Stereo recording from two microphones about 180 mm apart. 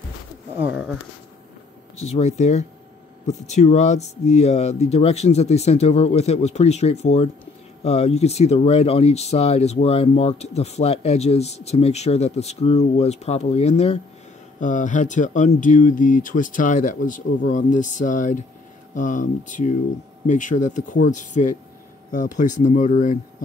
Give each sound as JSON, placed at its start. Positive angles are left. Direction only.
{"t": 2.0, "sound": "speech", "side_deg": 35}